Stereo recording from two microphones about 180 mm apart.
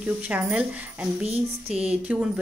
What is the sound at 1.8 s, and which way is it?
Speech, 5° right (ahead or behind).